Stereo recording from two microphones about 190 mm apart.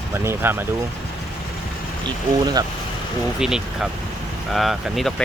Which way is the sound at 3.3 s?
5° right (ahead or behind).